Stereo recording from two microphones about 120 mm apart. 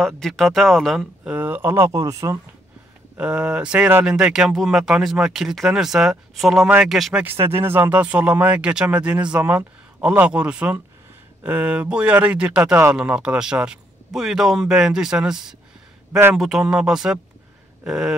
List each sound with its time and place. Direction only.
0.0 s speech: centre (ahead or behind)
1.2 s speech: 15° right (ahead or behind)
3.2 s speech: 10° right (ahead or behind)
7.2 s speech: 20° right (ahead or behind); by 18.1 s 5° right (ahead or behind)